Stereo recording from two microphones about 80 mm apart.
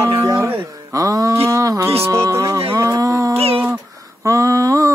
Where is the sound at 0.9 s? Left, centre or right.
Right.